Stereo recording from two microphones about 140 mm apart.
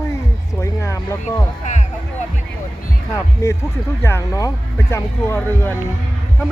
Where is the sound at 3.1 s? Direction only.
20° left (ahead or behind).